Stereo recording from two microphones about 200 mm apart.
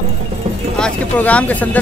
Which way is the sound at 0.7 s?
5° left (ahead or behind).